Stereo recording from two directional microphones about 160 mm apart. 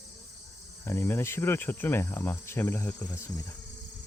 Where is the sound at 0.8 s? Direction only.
15° left (ahead or behind).